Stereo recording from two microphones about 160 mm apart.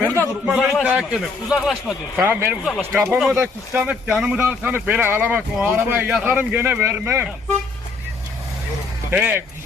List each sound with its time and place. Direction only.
0.0 s a sound: 15° left (ahead or behind)
0.4 s a man's voice: 5° right (ahead or behind)
2.2 s speech: 10° right (ahead or behind)
9.0 s speech: 10° right (ahead or behind)